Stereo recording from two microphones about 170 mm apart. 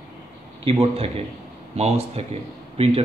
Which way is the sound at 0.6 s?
35° right (ahead or behind).